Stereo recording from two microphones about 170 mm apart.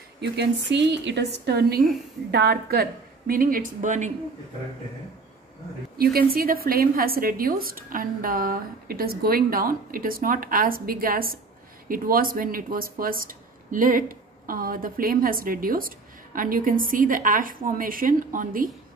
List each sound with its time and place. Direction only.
0.2 s a woman's voice: 85° right; by 4.1 s 50° right (ahead or behind)
6.3 s a woman's voice: 60° right (ahead or behind)